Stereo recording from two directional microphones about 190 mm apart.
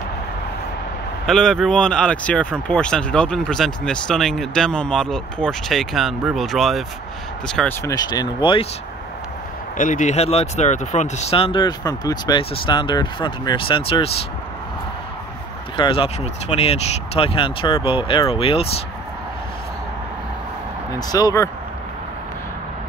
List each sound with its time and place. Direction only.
1.2 s speech: 5° left (ahead or behind)
7.8 s speech: 20° left (ahead or behind)
9.8 s speech: 40° left (ahead or behind)
15.7 s speech: 25° left (ahead or behind)
21.1 s speech: 20° left (ahead or behind)